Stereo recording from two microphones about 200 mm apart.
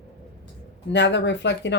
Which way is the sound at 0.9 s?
60° left (ahead or behind).